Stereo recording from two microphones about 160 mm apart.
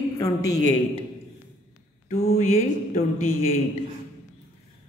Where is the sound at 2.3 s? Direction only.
50° left (ahead or behind).